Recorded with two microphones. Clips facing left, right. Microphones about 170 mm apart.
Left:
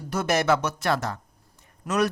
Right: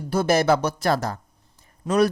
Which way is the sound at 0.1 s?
30° right (ahead or behind).